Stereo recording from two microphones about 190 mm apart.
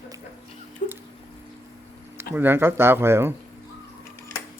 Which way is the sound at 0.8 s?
45° left (ahead or behind).